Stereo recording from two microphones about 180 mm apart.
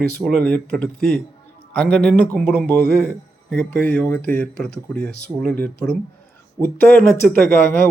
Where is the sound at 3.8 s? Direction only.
10° left (ahead or behind).